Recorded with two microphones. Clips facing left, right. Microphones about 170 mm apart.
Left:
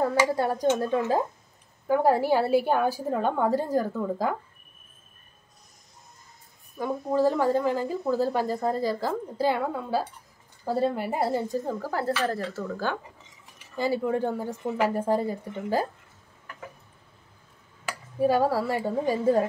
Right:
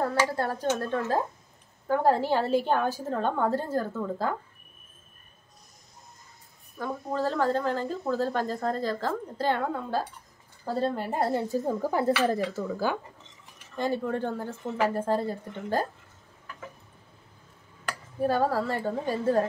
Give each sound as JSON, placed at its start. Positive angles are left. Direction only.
{"t": 0.0, "sound": "a woman's voice", "side_deg": 15}
{"t": 6.8, "sound": "a woman's voice", "side_deg": 15}
{"t": 11.2, "sound": "speech", "side_deg": 0}
{"t": 11.6, "sound": "speech", "side_deg": -20}
{"t": 13.7, "sound": "a woman's voice", "side_deg": 5}
{"t": 17.8, "sound": "speech", "side_deg": 10}